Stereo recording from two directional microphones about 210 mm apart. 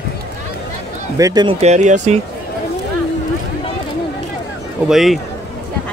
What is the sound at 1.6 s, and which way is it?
Speech, 35° right (ahead or behind).